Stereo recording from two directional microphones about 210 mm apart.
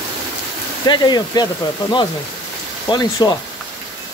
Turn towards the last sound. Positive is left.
turn(degrees=20)  # may be behind; listen again after turning